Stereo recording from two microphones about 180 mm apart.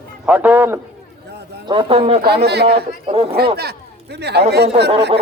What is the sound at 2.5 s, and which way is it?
Speech, 65° right (ahead or behind).